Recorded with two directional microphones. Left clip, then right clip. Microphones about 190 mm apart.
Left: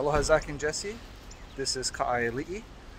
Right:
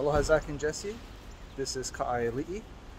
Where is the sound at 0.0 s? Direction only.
5° left (ahead or behind).